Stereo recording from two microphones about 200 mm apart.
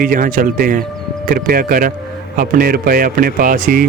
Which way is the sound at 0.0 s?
45° right (ahead or behind).